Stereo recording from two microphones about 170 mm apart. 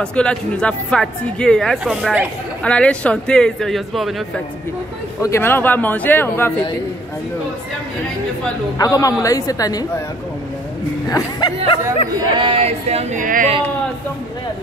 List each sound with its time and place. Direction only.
0.0 s speech: 5° left (ahead or behind)
5.2 s speech: 15° left (ahead or behind)
8.7 s speech: 20° left (ahead or behind)
11.1 s speech: 20° left (ahead or behind)
12.4 s speech: 30° right (ahead or behind); by 13.5 s 50° right (ahead or behind)